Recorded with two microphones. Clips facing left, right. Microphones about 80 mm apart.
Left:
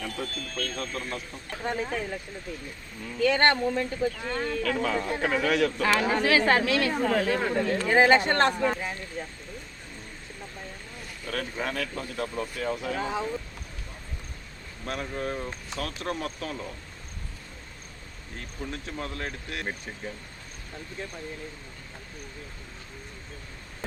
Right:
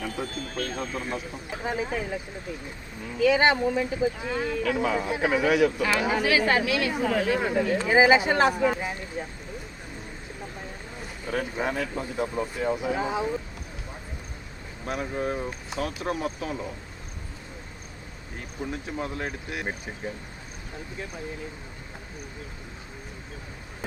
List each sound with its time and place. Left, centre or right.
0.0 s speech: centre
3.2 s speech: centre
10.6 s speech: centre
14.8 s speech: centre
18.3 s speech: centre